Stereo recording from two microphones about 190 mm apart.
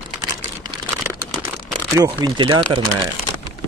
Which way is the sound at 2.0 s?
20° right (ahead or behind).